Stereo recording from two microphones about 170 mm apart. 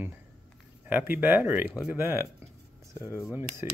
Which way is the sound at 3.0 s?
15° left (ahead or behind).